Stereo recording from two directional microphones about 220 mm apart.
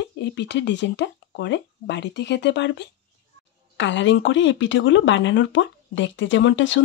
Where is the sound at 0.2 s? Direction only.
55° left (ahead or behind).